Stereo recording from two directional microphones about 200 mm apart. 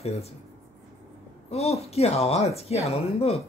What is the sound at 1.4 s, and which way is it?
Speech, 30° left (ahead or behind).